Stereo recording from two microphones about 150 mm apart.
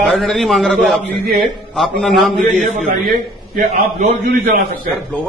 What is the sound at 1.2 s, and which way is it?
Speech, 90° right.